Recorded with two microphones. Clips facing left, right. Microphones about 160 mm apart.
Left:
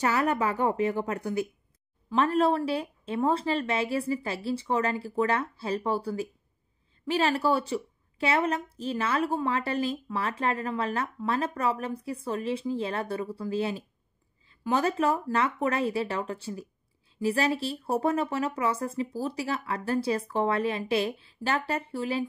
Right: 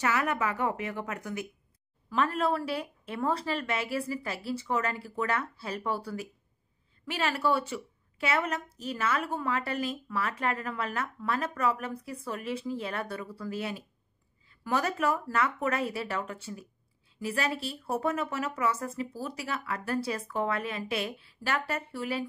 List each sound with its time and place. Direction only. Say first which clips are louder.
0.0 s a woman's voice: left 3 dB; 35° left (ahead or behind)